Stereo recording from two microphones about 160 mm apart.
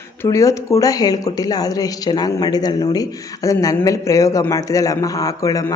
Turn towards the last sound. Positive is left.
turn(degrees=20)  # may be behind; listen again after turning